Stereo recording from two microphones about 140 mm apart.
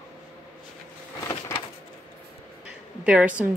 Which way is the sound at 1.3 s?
25° left (ahead or behind).